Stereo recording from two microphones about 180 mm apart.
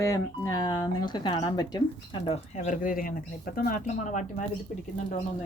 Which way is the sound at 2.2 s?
40° left (ahead or behind).